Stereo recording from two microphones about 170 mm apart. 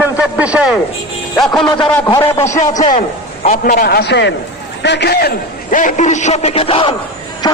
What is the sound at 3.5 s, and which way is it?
A man's voice, 50° left (ahead or behind).